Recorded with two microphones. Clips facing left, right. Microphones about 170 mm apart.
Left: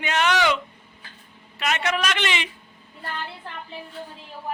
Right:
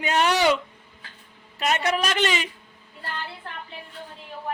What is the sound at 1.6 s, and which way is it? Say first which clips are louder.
Speech: right 1 dB; 40° right (ahead or behind).